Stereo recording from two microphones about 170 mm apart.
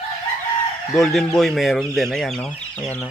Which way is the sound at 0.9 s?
Centre (ahead or behind).